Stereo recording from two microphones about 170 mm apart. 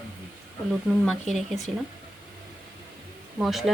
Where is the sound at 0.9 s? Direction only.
Centre (ahead or behind).